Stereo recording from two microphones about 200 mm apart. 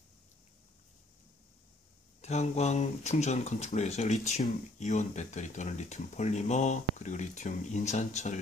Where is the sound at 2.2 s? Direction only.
35° left (ahead or behind).